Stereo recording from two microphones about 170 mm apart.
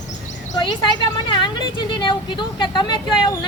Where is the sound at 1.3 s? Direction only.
30° left (ahead or behind).